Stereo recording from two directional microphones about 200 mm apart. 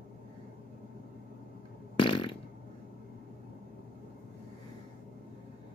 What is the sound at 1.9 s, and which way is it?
Fart, 25° left (ahead or behind).